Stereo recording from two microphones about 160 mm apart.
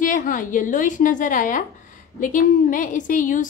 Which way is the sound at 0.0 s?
55° left (ahead or behind).